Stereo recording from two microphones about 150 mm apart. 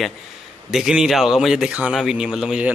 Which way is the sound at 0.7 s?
5° right (ahead or behind).